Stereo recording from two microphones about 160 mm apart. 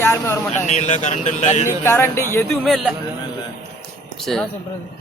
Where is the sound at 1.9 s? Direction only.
15° left (ahead or behind).